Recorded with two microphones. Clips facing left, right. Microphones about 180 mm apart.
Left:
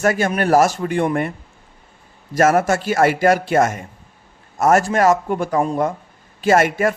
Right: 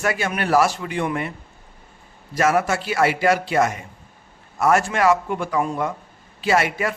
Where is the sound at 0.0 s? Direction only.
45° left (ahead or behind).